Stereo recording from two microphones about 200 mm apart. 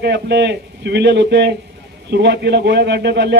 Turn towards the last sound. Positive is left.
turn(degrees=-60)  # may be behind; listen again after turning